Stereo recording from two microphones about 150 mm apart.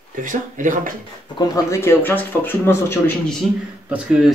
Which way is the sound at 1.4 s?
20° left (ahead or behind).